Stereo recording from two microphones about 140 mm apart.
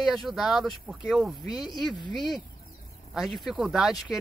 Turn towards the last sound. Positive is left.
turn(degrees=-5)  # may be behind; listen again after turning